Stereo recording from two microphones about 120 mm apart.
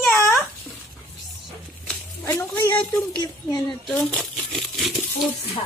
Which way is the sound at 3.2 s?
30° left (ahead or behind).